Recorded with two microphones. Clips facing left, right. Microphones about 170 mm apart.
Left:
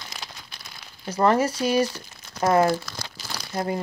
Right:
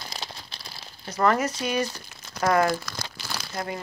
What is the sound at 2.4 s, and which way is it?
Speech, 20° left (ahead or behind).